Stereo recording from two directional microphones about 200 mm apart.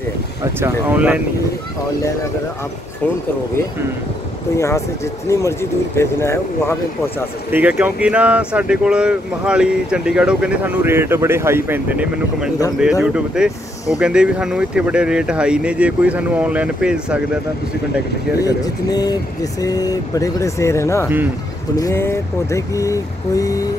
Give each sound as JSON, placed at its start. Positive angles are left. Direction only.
{"t": 0.4, "sound": "speech", "side_deg": -15}
{"t": 4.6, "sound": "speech", "side_deg": 15}
{"t": 7.5, "sound": "speech", "side_deg": -10}
{"t": 18.4, "sound": "speech", "side_deg": 20}